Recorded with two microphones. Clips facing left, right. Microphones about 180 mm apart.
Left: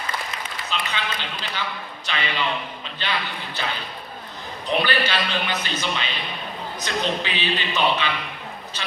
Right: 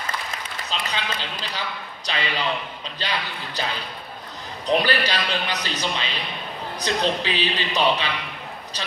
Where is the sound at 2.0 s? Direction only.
35° right (ahead or behind).